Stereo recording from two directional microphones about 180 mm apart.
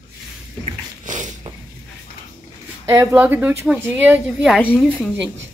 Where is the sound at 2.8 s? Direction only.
10° right (ahead or behind).